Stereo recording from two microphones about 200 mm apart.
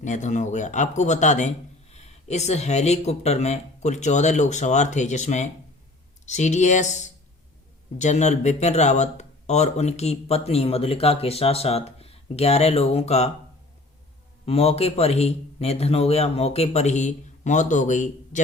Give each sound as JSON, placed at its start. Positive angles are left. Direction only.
{"t": 0.0, "sound": "speech", "side_deg": 35}
{"t": 14.4, "sound": "speech", "side_deg": 30}